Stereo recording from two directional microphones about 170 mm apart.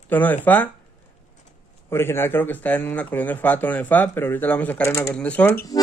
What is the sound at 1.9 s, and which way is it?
Speech, 15° left (ahead or behind).